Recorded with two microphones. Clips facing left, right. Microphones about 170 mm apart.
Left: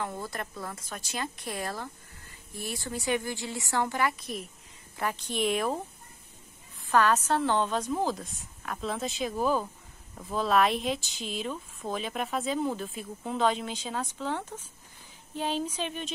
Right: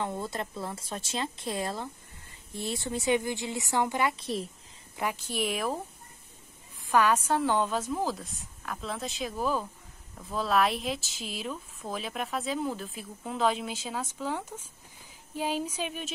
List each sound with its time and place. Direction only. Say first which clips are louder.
0.0 s speech: right 2 dB; 25° right (ahead or behind)
4.9 s speech: even; 10° right (ahead or behind)
6.9 s speech: even; 10° right (ahead or behind)